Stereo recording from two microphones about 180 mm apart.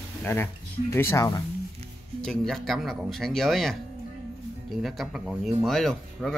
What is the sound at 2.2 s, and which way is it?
Speech, centre (ahead or behind).